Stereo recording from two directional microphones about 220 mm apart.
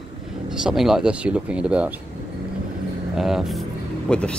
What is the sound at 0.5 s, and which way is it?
Speech, centre (ahead or behind).